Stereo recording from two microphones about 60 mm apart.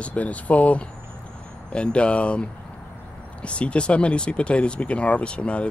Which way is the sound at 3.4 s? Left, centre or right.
Centre.